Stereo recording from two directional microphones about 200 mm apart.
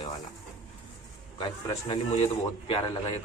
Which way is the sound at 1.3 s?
25° left (ahead or behind).